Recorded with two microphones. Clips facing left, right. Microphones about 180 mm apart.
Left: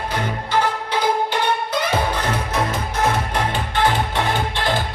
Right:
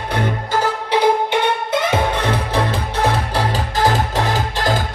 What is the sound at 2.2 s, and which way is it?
Music, 30° right (ahead or behind).